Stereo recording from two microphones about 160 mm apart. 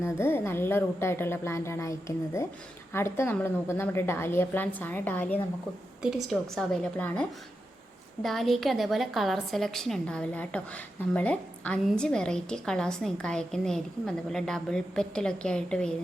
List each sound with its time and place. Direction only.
0.0 s a woman's voice: 15° left (ahead or behind)